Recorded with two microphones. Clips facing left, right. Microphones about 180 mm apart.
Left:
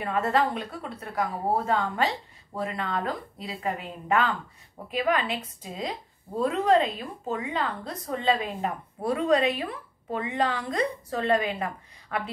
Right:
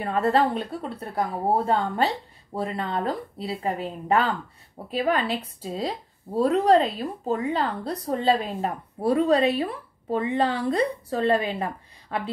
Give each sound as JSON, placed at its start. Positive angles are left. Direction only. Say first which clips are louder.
{"t": 0.0, "sound": "a woman's voice", "louder": "right 3 dB", "side_deg": -35}